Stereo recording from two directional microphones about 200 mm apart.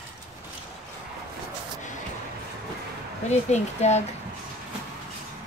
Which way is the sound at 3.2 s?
35° left (ahead or behind).